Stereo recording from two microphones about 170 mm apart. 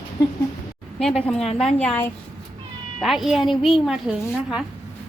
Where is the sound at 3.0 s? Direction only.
Centre (ahead or behind).